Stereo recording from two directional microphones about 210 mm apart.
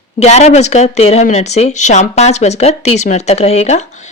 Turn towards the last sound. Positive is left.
turn(degrees=35)  # may be behind; listen again after turning